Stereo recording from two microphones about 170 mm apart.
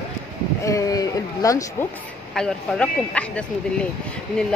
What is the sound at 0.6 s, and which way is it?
Speech, 20° left (ahead or behind).